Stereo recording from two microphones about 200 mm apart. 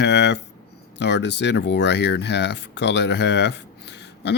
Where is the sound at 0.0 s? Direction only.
60° left (ahead or behind).